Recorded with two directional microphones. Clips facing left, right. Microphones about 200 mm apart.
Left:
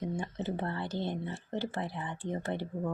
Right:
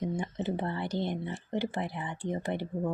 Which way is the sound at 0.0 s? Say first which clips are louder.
Right 3 dB; 20° right (ahead or behind).